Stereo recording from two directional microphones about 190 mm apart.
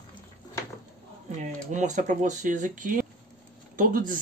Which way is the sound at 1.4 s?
40° right (ahead or behind).